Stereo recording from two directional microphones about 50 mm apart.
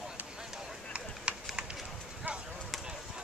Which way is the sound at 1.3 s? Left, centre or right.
Right.